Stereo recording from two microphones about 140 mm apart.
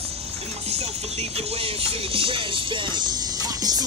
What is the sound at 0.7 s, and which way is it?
Music, 50° right (ahead or behind).